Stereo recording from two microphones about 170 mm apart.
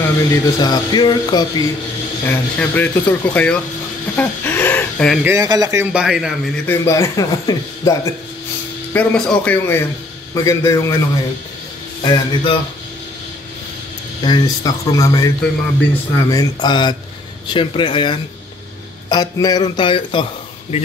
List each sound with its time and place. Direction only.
0.3 s speech: 25° left (ahead or behind)
2.2 s speech: 10° left (ahead or behind)
4.2 s a sound: 10° left (ahead or behind)
5.2 s speech: 20° right (ahead or behind)
5.9 s speech: 5° right (ahead or behind)
6.7 s speech: 15° left (ahead or behind)
8.9 s speech: 10° left (ahead or behind)
12.0 s speech: 25° left (ahead or behind)
14.2 s speech: 25° left (ahead or behind)